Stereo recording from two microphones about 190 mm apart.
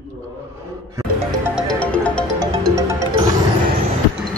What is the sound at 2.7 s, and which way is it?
Music, 15° right (ahead or behind).